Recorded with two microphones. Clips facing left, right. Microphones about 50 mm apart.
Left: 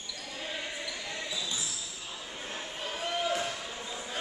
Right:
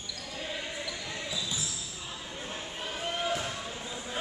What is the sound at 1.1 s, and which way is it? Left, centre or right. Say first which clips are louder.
Basketball bounce: even; centre.